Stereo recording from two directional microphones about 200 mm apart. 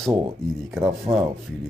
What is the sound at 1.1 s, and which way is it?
Speech, 25° right (ahead or behind).